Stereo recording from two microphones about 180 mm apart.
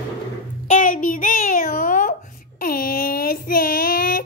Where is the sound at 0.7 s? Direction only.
45° left (ahead or behind).